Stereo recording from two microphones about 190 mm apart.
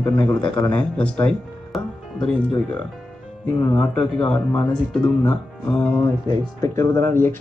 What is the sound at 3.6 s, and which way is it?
Speech, 20° left (ahead or behind).